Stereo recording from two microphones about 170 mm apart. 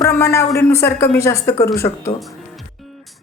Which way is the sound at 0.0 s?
15° left (ahead or behind).